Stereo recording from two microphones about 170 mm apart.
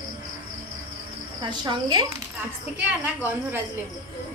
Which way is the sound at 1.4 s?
25° right (ahead or behind).